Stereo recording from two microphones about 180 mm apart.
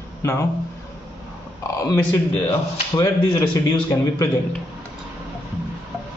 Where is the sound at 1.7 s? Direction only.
20° left (ahead or behind).